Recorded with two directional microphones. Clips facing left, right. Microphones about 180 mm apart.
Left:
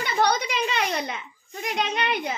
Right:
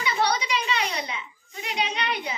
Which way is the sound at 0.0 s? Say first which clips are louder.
Left 2 dB; 55° left (ahead or behind).